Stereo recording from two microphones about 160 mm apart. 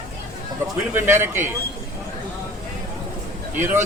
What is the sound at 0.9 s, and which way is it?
Speech, 15° right (ahead or behind).